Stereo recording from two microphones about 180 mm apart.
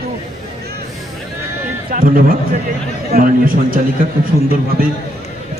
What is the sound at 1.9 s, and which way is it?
A man's voice, 50° right (ahead or behind).